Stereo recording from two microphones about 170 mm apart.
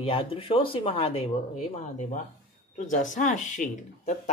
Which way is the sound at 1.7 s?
45° left (ahead or behind).